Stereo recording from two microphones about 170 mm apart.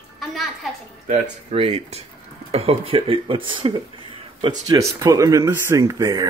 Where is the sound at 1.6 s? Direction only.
35° right (ahead or behind).